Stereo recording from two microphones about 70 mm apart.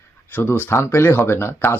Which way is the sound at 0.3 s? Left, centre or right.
Left.